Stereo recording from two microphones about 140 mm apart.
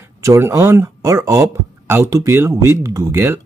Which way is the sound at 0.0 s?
20° right (ahead or behind).